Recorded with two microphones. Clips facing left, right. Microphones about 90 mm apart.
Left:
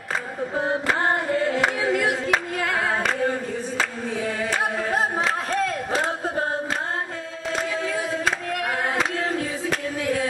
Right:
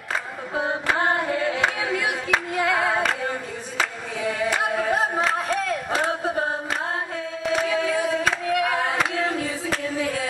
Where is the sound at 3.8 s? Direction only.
15° right (ahead or behind).